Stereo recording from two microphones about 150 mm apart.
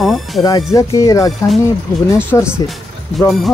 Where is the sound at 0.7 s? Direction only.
25° left (ahead or behind).